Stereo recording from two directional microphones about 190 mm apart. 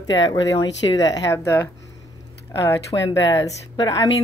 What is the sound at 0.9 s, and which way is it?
Speech, 20° left (ahead or behind).